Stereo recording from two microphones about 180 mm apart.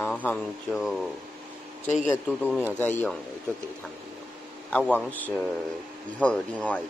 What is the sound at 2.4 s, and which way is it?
Speech, 10° right (ahead or behind).